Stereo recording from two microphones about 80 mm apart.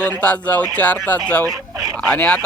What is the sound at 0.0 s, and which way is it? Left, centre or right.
Speech, centre.